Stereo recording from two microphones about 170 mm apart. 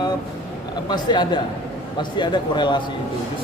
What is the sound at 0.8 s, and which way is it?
A man's voice, 25° left (ahead or behind).